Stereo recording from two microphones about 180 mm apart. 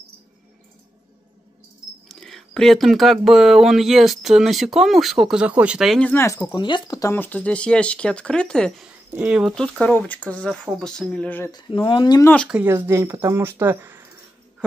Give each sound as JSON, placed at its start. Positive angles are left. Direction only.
{"t": 2.0, "sound": "speech", "side_deg": 0}
{"t": 9.1, "sound": "speech", "side_deg": -5}
{"t": 11.5, "sound": "speech", "side_deg": 25}
{"t": 12.4, "sound": "speech", "side_deg": -10}